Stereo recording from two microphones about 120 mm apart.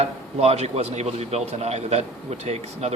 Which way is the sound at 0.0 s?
65° right (ahead or behind).